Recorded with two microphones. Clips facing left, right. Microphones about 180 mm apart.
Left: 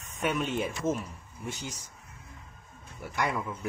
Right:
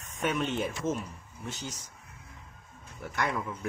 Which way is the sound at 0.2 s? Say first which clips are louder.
Even; 5° left (ahead or behind).